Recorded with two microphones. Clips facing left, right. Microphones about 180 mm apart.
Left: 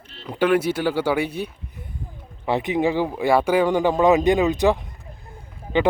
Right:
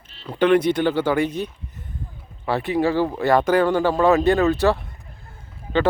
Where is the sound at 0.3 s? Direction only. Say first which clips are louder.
Right 2 dB; 5° left (ahead or behind).